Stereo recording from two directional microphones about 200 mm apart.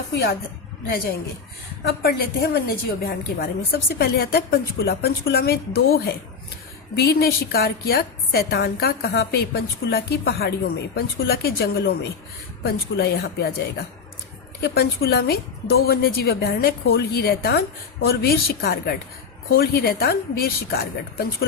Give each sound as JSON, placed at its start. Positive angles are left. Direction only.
{"t": 0.9, "sound": "a woman's voice", "side_deg": 50}